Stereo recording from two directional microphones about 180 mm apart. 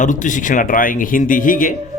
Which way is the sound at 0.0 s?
45° left (ahead or behind).